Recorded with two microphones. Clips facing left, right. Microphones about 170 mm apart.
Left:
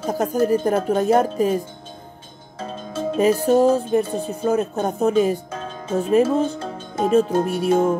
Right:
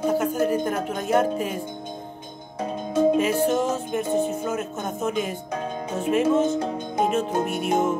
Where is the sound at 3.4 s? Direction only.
35° left (ahead or behind).